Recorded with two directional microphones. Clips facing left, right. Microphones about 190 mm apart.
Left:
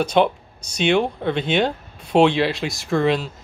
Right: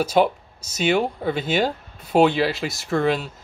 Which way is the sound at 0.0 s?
5° right (ahead or behind).